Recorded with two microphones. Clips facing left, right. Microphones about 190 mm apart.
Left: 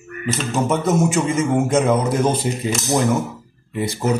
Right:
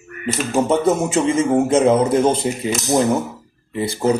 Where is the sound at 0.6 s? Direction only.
30° right (ahead or behind).